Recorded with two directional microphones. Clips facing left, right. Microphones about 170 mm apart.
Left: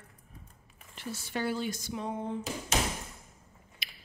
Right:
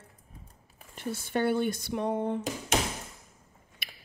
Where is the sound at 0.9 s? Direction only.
55° right (ahead or behind).